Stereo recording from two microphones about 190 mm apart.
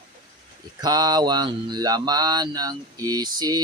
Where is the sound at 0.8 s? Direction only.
20° right (ahead or behind).